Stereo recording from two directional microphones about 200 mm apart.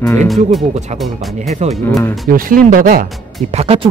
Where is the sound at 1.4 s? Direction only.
35° right (ahead or behind).